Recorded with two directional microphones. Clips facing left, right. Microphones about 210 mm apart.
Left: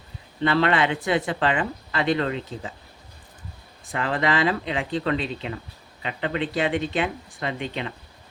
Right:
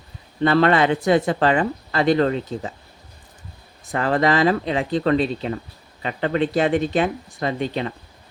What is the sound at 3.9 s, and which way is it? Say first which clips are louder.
Speech: right 5 dB; 40° right (ahead or behind).